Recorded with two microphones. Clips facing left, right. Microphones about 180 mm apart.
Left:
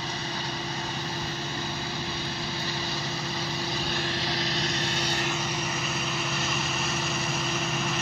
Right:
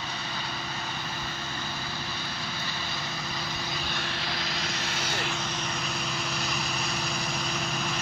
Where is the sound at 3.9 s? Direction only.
35° left (ahead or behind).